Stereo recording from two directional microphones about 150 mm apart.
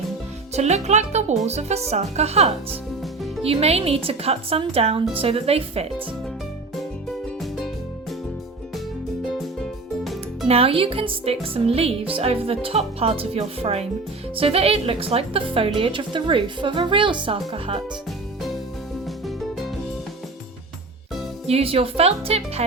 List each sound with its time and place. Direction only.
0.5 s speech: 50° right (ahead or behind)
10.5 s speech: 40° right (ahead or behind)
21.4 s speech: 40° right (ahead or behind)